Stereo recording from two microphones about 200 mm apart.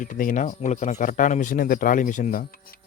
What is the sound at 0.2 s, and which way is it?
A man's voice, 40° left (ahead or behind).